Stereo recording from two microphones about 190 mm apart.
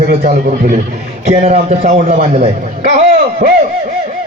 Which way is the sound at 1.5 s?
30° right (ahead or behind).